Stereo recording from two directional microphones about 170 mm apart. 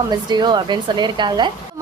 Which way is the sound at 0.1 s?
25° right (ahead or behind).